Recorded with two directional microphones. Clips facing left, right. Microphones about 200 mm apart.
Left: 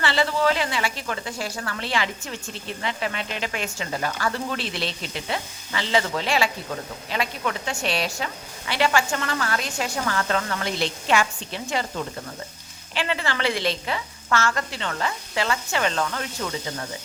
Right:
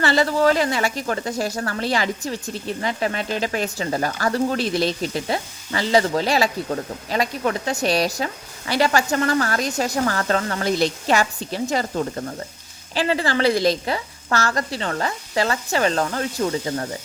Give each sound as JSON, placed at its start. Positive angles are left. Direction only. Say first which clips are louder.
{"t": 0.0, "sound": "a woman's voice", "louder": "right 4 dB", "side_deg": -40}